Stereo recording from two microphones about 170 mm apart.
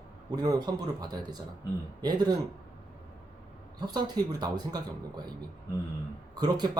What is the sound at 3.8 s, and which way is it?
Speech, 25° right (ahead or behind).